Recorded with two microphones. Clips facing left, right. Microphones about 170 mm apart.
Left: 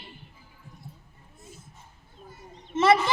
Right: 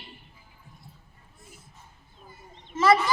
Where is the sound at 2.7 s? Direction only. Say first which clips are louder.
Left 1 dB; 25° left (ahead or behind).